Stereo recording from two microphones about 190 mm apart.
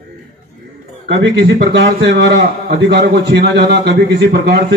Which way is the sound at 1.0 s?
65° right (ahead or behind).